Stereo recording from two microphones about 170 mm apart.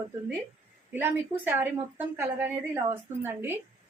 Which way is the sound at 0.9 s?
10° right (ahead or behind).